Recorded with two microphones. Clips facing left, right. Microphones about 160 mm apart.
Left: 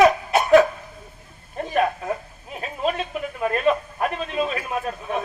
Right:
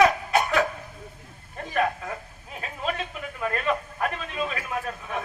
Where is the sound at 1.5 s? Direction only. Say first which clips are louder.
Left 4 dB; 20° left (ahead or behind).